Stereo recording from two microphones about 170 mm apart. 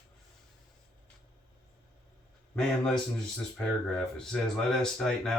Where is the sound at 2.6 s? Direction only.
5° left (ahead or behind).